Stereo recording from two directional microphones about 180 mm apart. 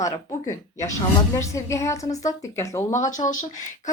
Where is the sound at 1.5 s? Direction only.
15° left (ahead or behind).